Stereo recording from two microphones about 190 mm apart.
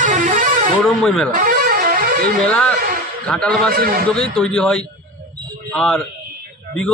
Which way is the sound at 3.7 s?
50° right (ahead or behind).